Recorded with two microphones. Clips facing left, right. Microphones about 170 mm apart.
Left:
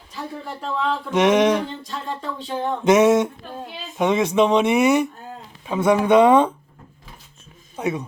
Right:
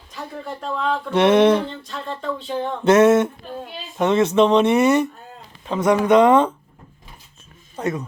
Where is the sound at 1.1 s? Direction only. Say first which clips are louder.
Right 2 dB; 10° left (ahead or behind).